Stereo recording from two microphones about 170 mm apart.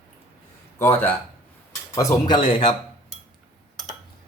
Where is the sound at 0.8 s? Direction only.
15° left (ahead or behind); by 2.7 s 30° left (ahead or behind).